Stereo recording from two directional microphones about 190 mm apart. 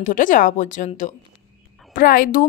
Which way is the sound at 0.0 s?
45° left (ahead or behind).